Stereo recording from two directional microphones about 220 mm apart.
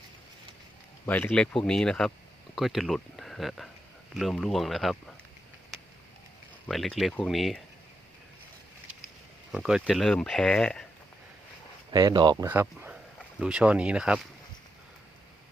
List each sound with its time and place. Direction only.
1.0 s speech: 10° left (ahead or behind)
5.7 s a sound: centre (ahead or behind)
6.7 s speech: centre (ahead or behind)
9.5 s speech: 5° right (ahead or behind)
11.9 s speech: 20° right (ahead or behind)
12.5 s speech: 10° right (ahead or behind)